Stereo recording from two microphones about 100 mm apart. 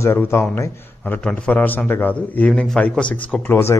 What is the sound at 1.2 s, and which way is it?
A man's voice, 10° left (ahead or behind).